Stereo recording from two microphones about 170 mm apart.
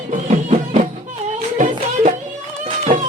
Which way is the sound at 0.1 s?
45° right (ahead or behind).